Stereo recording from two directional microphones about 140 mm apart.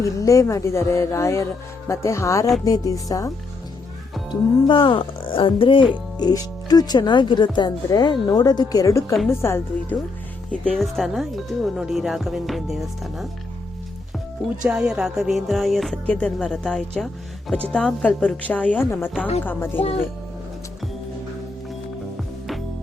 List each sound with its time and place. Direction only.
0.0 s speech: 25° left (ahead or behind)
4.3 s speech: 35° left (ahead or behind); by 9.6 s 20° left (ahead or behind)
10.5 s speech: 5° left (ahead or behind)
14.7 s a woman's voice: 5° right (ahead or behind); by 19.8 s 15° left (ahead or behind)